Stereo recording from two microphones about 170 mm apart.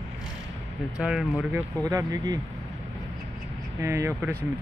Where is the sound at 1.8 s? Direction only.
20° right (ahead or behind).